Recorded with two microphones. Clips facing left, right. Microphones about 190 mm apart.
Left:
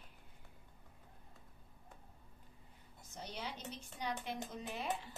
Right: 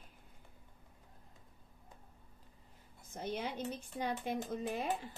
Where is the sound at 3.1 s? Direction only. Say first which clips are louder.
Right 7 dB; 55° right (ahead or behind).